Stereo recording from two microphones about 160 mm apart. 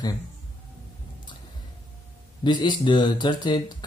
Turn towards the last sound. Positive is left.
turn(degrees=30)  # may be behind; listen again after turning